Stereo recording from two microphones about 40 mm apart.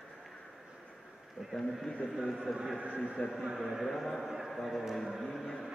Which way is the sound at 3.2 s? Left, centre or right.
Left.